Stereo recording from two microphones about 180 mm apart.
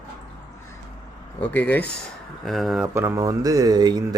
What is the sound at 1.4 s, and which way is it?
Speech, 10° left (ahead or behind).